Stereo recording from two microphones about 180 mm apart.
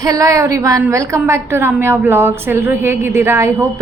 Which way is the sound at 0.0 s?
20° right (ahead or behind).